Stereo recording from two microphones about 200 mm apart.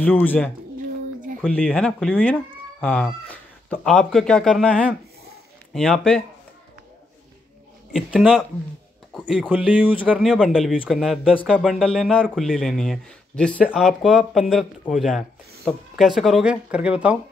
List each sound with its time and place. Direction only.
0.0 s speech: 10° left (ahead or behind)
7.9 s speech: 5° right (ahead or behind)